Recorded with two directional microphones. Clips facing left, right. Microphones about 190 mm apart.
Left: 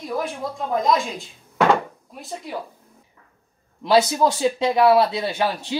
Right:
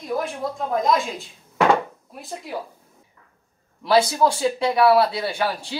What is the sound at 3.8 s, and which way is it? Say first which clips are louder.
Speech: left 1 dB; 20° left (ahead or behind).